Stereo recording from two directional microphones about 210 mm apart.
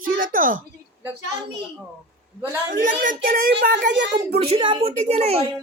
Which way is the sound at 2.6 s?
40° right (ahead or behind).